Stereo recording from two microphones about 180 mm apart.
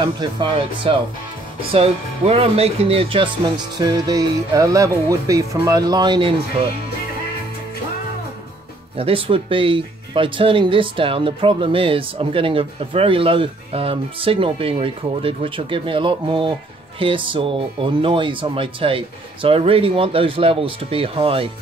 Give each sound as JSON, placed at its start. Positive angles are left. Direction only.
{"t": 0.0, "sound": "speech", "side_deg": -30}
{"t": 8.9, "sound": "speech", "side_deg": -30}